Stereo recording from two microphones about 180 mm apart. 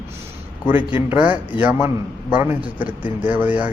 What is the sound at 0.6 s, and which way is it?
Speech, 10° right (ahead or behind).